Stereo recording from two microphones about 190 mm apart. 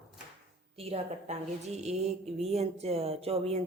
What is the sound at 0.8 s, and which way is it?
A woman's voice, 30° right (ahead or behind).